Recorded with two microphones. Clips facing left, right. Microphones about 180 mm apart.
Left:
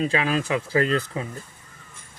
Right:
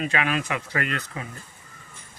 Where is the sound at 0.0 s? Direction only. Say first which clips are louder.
Left 3 dB; 30° left (ahead or behind).